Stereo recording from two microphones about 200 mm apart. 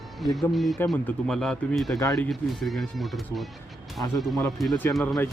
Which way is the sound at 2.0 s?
15° left (ahead or behind).